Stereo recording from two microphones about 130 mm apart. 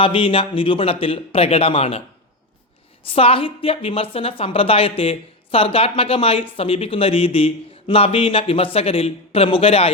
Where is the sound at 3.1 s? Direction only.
45° left (ahead or behind).